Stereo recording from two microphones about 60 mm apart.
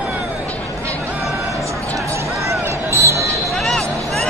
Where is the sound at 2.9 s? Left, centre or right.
Right.